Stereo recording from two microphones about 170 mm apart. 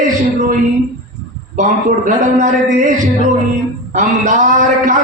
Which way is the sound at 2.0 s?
45° right (ahead or behind).